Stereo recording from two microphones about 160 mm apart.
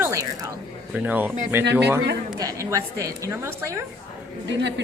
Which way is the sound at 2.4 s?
20° right (ahead or behind).